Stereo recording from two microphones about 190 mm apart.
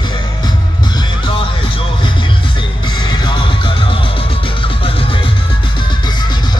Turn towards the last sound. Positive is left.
turn(degrees=20)  # may be behind; listen again after turning